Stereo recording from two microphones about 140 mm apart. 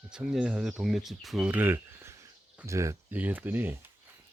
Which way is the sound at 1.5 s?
15° right (ahead or behind).